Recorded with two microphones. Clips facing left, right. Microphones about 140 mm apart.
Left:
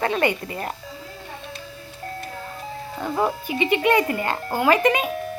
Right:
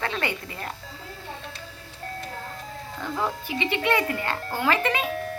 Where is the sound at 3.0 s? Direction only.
20° left (ahead or behind).